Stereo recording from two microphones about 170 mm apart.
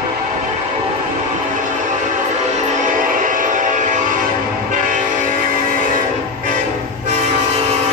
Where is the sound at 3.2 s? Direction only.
50° right (ahead or behind).